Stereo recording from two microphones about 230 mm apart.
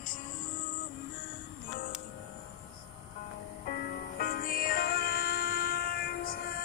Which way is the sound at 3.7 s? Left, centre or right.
Left.